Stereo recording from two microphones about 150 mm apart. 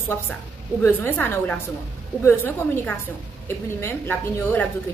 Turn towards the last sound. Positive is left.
turn(degrees=15)  # may be behind; listen again after turning